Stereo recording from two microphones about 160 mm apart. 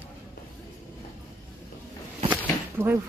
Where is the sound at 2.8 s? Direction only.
10° right (ahead or behind).